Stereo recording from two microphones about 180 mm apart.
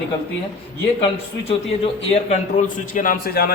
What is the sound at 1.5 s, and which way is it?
A man's voice, 35° left (ahead or behind).